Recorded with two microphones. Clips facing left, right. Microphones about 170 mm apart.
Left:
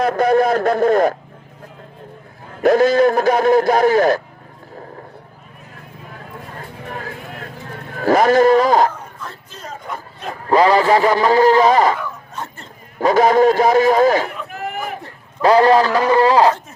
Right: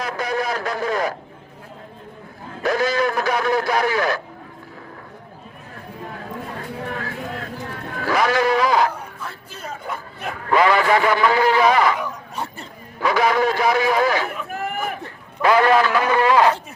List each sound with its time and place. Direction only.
0.0 s a man's voice: 50° left (ahead or behind)
2.6 s a man's voice: 50° left (ahead or behind)
8.0 s a man's voice: 45° left (ahead or behind)
8.9 s bow-wow: 10° right (ahead or behind)
10.2 s a man's voice: 35° left (ahead or behind)
11.9 s a sound: 15° right (ahead or behind)
13.0 s a man's voice: 45° left (ahead or behind)
14.5 s a sound: 50° right (ahead or behind)
15.4 s a man's voice: 35° left (ahead or behind)